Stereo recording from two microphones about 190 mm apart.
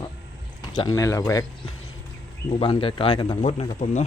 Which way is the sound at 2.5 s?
30° left (ahead or behind).